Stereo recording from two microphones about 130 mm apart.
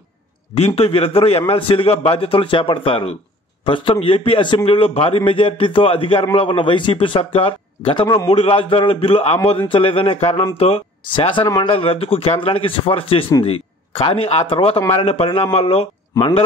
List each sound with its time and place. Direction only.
0.6 s a man's voice: 50° left (ahead or behind); by 11.7 s 30° left (ahead or behind)
11.7 s a man's voice: 45° left (ahead or behind)